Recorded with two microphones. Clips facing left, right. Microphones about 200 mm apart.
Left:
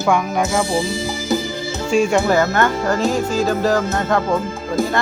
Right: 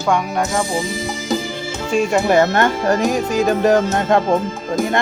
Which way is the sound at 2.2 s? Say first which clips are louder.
Right 2 dB; 25° right (ahead or behind).